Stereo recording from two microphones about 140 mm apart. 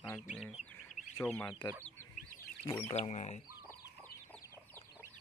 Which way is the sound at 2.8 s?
50° left (ahead or behind).